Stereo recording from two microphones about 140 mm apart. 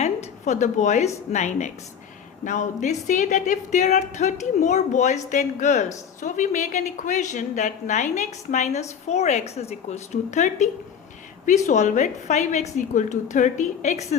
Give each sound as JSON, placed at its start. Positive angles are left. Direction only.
{"t": 0.0, "sound": "a woman's voice", "side_deg": 55}